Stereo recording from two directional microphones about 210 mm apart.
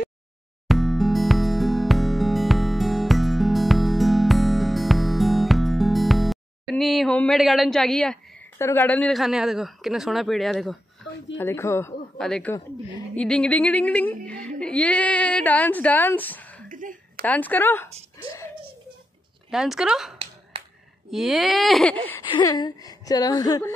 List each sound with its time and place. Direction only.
0.7 s music: centre (ahead or behind)
8.5 s speech: 10° left (ahead or behind)
11.3 s speech: 10° left (ahead or behind)
16.6 s a sound: 40° right (ahead or behind)
17.3 s speech: 10° left (ahead or behind)
19.5 s speech: 5° right (ahead or behind)
22.3 s speech: 20° left (ahead or behind)